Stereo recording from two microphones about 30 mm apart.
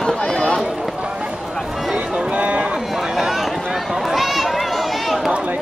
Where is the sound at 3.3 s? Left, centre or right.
Centre.